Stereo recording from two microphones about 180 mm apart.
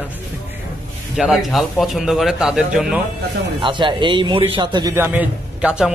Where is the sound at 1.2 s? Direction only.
Centre (ahead or behind).